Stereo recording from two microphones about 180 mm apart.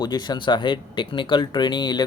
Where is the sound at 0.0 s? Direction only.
25° left (ahead or behind).